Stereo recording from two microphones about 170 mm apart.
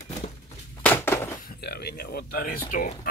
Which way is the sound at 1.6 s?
70° left (ahead or behind).